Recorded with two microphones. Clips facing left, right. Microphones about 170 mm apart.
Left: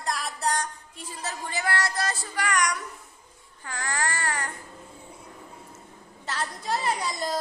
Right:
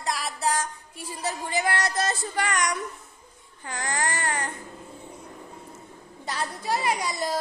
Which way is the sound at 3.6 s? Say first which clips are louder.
Right 2 dB; 20° right (ahead or behind).